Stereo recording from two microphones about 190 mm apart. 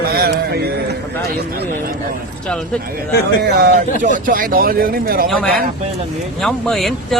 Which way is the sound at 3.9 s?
40° right (ahead or behind).